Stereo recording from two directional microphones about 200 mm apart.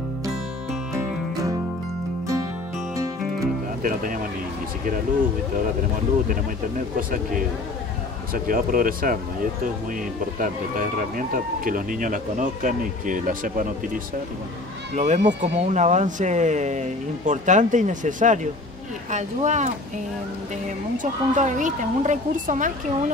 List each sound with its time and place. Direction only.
3.8 s speech: 45° right (ahead or behind)
7.0 s speech: 45° right (ahead or behind)
15.0 s speech: 35° right (ahead or behind)
21.0 s speech: 40° right (ahead or behind)